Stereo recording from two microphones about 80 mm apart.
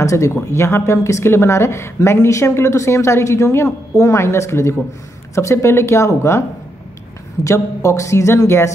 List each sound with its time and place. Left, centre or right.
0.0 s a woman's voice: left
7.4 s a woman's voice: left